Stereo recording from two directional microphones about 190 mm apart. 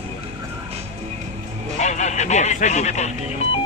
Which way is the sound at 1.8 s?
40° left (ahead or behind).